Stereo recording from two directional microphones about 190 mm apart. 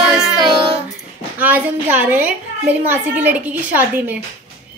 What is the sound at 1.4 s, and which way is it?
A woman's voice, 10° right (ahead or behind).